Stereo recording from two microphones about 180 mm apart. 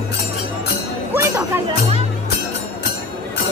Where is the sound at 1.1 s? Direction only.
15° right (ahead or behind).